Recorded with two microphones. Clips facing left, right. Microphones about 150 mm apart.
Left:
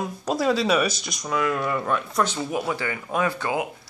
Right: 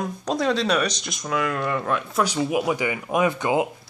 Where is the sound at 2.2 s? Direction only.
15° right (ahead or behind).